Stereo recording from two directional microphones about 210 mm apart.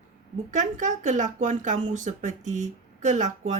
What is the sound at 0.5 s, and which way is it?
Speech, 35° right (ahead or behind).